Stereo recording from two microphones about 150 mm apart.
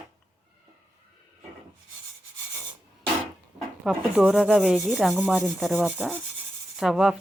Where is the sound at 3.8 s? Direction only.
5° right (ahead or behind).